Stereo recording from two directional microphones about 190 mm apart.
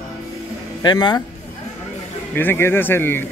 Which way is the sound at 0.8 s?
20° left (ahead or behind).